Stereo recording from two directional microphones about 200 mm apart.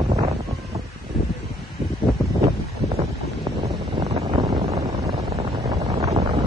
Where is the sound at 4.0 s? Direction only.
25° right (ahead or behind).